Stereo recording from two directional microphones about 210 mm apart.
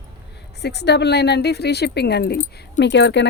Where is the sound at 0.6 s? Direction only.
50° left (ahead or behind).